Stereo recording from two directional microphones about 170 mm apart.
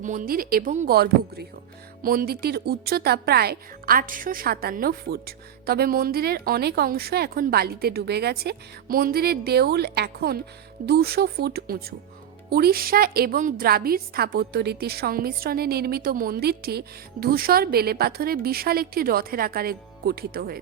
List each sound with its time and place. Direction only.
0.0 s a woman's voice: 50° right (ahead or behind)
0.9 s a woman's voice: 65° right (ahead or behind)